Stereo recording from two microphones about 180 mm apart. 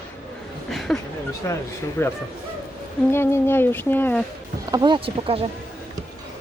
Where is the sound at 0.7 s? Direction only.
Centre (ahead or behind).